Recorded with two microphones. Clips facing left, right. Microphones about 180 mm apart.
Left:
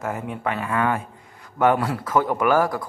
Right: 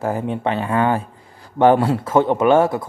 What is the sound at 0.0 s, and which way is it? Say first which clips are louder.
Speech: right 6 dB; 30° right (ahead or behind).